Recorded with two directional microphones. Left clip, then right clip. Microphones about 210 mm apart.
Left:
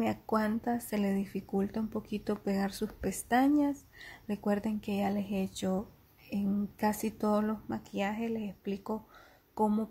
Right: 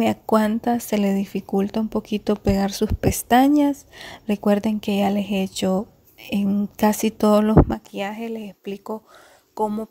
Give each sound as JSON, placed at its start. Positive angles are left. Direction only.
{"t": 0.0, "sound": "speech", "side_deg": -35}